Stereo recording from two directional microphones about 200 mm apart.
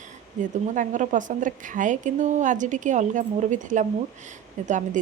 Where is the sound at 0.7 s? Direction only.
40° right (ahead or behind).